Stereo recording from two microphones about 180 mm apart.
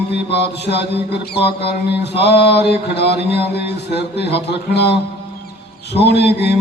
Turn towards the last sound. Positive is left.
turn(degrees=65)  # may be behind; listen again after turning